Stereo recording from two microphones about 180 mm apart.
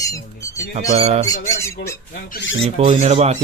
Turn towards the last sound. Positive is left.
turn(degrees=-35)  # may be behind; listen again after turning